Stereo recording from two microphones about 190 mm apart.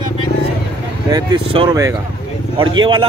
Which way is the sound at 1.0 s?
20° right (ahead or behind).